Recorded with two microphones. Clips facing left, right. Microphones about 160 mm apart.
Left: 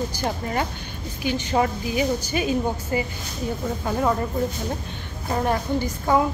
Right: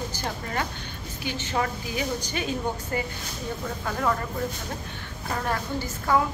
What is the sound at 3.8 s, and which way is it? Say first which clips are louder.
Speech: left 4 dB; 20° left (ahead or behind).